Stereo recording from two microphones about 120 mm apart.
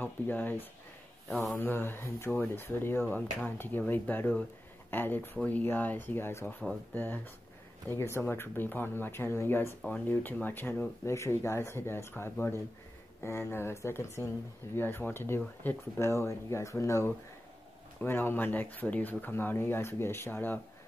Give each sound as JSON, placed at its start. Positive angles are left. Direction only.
{"t": 0.0, "sound": "speech", "side_deg": 15}
{"t": 1.3, "sound": "speech", "side_deg": 0}
{"t": 1.6, "sound": "speech", "side_deg": 15}